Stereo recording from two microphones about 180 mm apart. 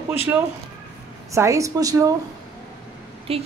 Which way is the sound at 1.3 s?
15° right (ahead or behind).